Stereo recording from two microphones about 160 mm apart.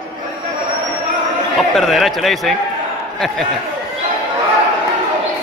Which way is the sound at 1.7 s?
Centre (ahead or behind).